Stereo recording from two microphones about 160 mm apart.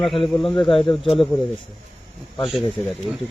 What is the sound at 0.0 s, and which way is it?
Speech, centre (ahead or behind).